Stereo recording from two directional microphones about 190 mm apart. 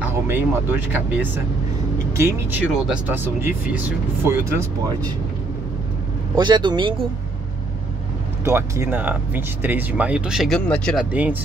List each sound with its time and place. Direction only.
0.0 s speech: 10° right (ahead or behind)
6.3 s speech: 20° right (ahead or behind)
8.5 s speech: 15° right (ahead or behind); by 11.1 s 5° left (ahead or behind)
11.1 s speech: 10° right (ahead or behind)